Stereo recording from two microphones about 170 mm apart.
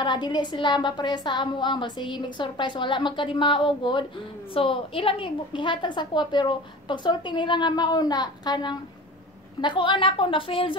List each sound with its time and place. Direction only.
0.0 s a woman's voice: 25° left (ahead or behind)